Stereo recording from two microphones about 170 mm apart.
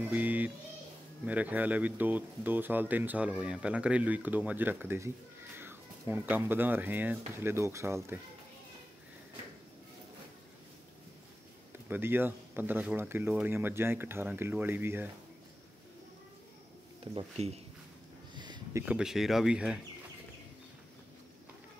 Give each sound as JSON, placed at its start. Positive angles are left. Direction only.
{"t": 0.0, "sound": "speech", "side_deg": -10}
{"t": 11.9, "sound": "speech", "side_deg": -10}
{"t": 17.0, "sound": "speech", "side_deg": -30}
{"t": 18.3, "sound": "a sound", "side_deg": -25}
{"t": 18.9, "sound": "speech", "side_deg": 0}